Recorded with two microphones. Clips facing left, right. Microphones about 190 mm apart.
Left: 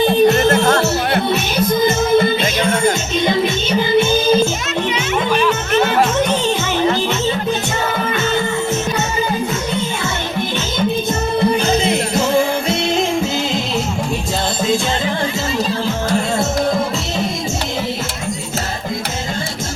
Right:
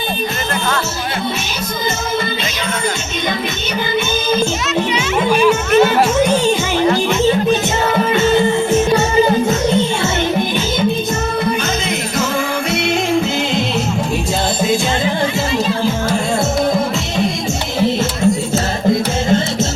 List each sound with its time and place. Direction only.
0.4 s music: 45° left (ahead or behind)
5.3 s music: 10° right (ahead or behind)
8.1 s music: 25° right (ahead or behind)
12.7 s music: 25° left (ahead or behind)